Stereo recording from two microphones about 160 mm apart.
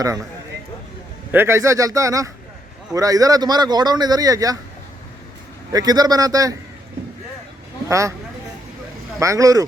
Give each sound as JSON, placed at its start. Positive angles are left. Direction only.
{"t": 1.3, "sound": "a man's voice", "side_deg": -15}
{"t": 5.7, "sound": "a man's voice", "side_deg": -25}
{"t": 7.9, "sound": "speech", "side_deg": -20}
{"t": 9.1, "sound": "a man's voice", "side_deg": -20}